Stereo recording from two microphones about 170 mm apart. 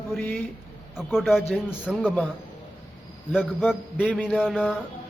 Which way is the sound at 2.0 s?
10° left (ahead or behind).